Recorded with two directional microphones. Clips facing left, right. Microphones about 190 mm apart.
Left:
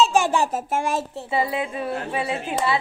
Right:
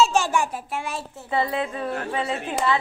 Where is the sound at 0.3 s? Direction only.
40° left (ahead or behind).